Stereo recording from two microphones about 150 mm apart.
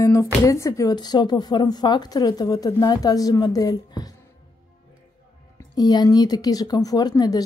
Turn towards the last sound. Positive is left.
turn(degrees=25)  # may be behind; listen again after turning